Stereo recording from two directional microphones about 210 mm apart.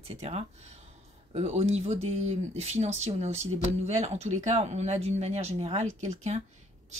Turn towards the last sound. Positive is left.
turn(degrees=-30)  # may be behind; listen again after turning